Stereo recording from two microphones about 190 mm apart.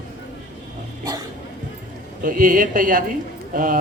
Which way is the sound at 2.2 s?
45° right (ahead or behind).